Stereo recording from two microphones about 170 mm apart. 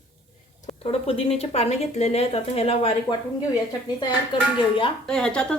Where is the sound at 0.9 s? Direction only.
35° left (ahead or behind).